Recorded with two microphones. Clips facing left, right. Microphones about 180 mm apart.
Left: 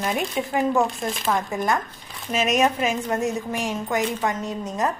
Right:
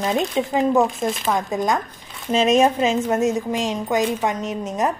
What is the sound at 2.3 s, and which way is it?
A woman's voice, 30° right (ahead or behind).